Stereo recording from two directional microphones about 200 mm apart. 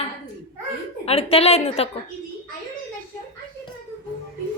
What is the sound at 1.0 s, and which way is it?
Speech, 30° left (ahead or behind).